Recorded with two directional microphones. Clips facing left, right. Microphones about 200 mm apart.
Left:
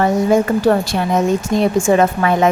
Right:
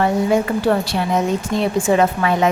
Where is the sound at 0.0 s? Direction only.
40° left (ahead or behind).